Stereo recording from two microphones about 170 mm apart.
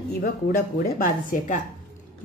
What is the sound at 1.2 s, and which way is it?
Speech, 50° left (ahead or behind).